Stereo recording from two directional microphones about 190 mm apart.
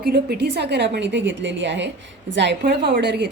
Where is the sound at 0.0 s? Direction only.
55° right (ahead or behind).